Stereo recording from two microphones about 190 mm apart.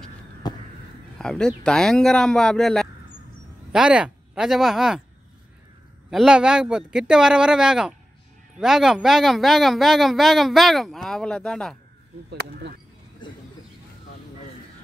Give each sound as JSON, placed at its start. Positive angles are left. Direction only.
{"t": 0.4, "sound": "crow", "side_deg": 20}
{"t": 1.1, "sound": "speech", "side_deg": 5}
{"t": 6.0, "sound": "speech", "side_deg": -5}
{"t": 12.3, "sound": "speech", "side_deg": -60}